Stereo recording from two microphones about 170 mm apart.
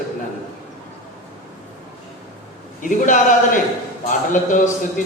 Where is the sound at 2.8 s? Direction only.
50° left (ahead or behind).